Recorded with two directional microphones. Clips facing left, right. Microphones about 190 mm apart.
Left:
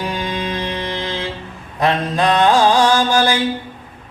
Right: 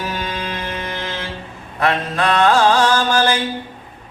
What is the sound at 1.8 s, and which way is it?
Mantra, 15° left (ahead or behind).